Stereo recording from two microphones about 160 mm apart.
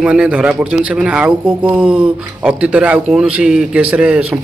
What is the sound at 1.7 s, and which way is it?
Speech, 5° right (ahead or behind).